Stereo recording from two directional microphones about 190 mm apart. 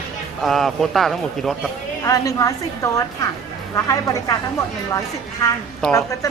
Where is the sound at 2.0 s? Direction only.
15° left (ahead or behind).